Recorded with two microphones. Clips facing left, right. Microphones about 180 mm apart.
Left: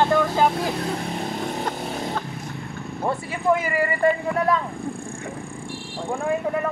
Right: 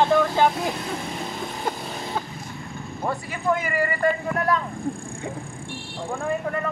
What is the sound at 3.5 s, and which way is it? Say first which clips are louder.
Speech: left 3 dB; 30° left (ahead or behind).